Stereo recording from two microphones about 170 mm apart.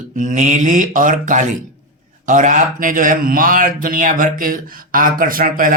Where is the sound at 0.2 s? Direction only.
45° right (ahead or behind).